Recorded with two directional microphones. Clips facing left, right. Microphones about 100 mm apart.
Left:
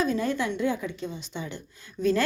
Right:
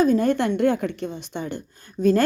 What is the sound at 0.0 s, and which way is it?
A woman's voice, 50° right (ahead or behind).